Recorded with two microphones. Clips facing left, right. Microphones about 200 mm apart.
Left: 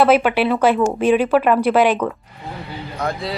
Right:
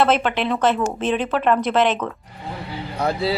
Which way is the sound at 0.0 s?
10° left (ahead or behind).